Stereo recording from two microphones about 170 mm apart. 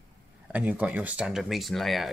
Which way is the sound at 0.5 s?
10° right (ahead or behind).